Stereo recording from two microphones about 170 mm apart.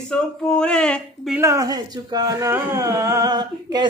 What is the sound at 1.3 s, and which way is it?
Speech, 15° right (ahead or behind).